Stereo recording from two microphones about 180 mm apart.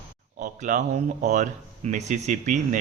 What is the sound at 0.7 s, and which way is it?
Speech, 50° right (ahead or behind).